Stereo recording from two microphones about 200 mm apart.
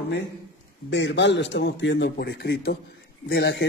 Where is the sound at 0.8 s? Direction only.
60° left (ahead or behind).